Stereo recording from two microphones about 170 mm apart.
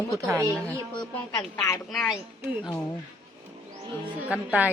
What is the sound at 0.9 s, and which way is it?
Speech, 25° left (ahead or behind).